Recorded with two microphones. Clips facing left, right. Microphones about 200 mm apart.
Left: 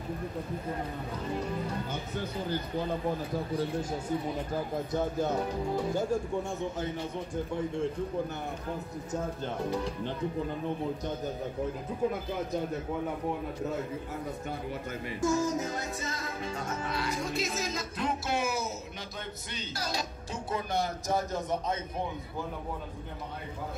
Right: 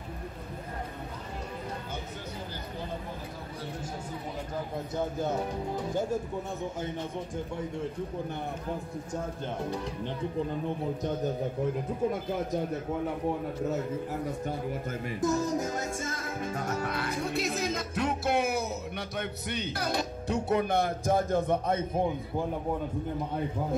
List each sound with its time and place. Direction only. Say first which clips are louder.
15.2 s music: even; 35° right (ahead or behind)
16.7 s speech: right 2 dB; 60° right (ahead or behind)